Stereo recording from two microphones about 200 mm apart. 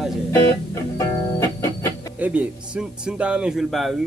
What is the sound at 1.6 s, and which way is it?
Music, 15° left (ahead or behind).